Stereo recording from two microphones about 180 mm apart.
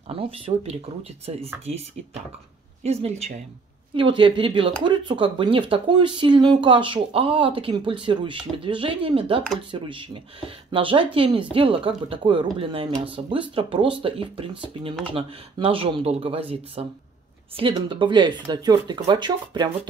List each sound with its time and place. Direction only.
0.1 s speech: 30° right (ahead or behind)
2.8 s speech: 35° right (ahead or behind)